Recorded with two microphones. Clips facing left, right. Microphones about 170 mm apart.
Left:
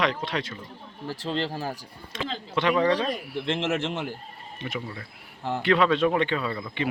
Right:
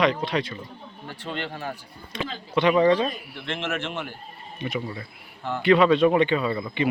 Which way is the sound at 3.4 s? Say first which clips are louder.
Left 2 dB; 25° left (ahead or behind).